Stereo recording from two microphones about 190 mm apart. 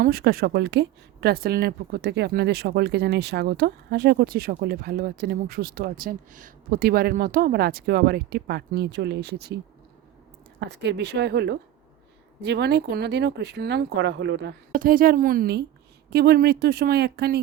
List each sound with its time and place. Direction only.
0.0 s speech: 55° right (ahead or behind)
10.6 s speech: 65° right (ahead or behind)
14.7 s speech: 45° right (ahead or behind)